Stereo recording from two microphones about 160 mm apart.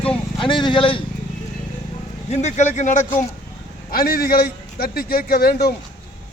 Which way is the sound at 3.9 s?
70° left (ahead or behind).